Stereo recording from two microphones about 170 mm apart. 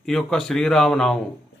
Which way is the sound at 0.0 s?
Centre (ahead or behind).